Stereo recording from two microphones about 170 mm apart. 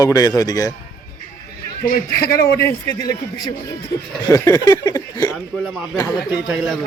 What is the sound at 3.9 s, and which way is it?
Speech, 80° left.